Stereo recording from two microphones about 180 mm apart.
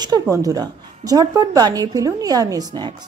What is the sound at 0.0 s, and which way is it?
Speech, 20° right (ahead or behind).